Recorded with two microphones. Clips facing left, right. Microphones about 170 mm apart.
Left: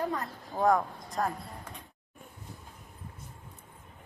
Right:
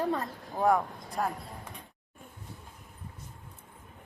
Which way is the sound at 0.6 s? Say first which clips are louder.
Even; 10° right (ahead or behind).